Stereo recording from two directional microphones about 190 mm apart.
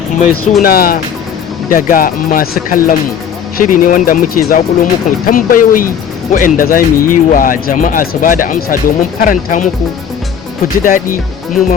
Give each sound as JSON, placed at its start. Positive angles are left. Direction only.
{"t": 0.6, "sound": "speech", "side_deg": 50}
{"t": 10.8, "sound": "speech", "side_deg": 45}